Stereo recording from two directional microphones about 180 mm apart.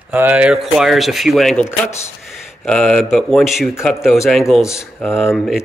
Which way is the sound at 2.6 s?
5° left (ahead or behind).